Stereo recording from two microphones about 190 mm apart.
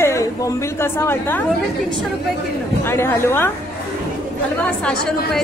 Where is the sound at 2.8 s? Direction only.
15° left (ahead or behind).